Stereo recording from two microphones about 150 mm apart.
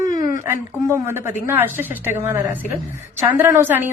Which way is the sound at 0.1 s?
20° right (ahead or behind).